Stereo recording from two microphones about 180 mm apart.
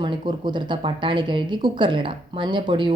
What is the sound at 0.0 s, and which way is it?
A woman's voice, 25° right (ahead or behind).